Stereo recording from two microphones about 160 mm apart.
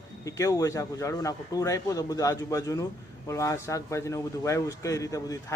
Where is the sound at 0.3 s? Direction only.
20° left (ahead or behind).